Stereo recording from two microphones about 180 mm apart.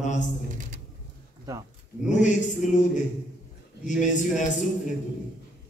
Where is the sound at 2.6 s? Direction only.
45° left (ahead or behind).